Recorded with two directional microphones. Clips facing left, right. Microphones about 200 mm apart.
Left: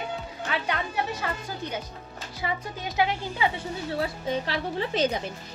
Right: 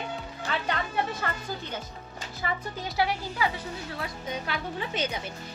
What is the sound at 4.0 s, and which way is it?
A woman's voice, 30° left (ahead or behind).